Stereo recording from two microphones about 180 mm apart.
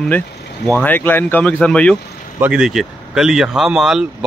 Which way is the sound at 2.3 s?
5° right (ahead or behind).